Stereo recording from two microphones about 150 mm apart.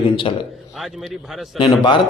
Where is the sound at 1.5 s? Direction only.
30° left (ahead or behind).